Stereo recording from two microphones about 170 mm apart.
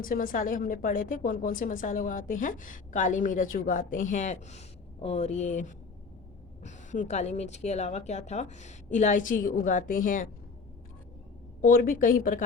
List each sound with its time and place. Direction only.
0.0 s a woman's voice: 55° left (ahead or behind)
11.6 s speech: 55° left (ahead or behind)